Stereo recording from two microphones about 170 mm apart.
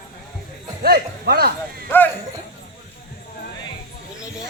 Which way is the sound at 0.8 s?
65° right (ahead or behind).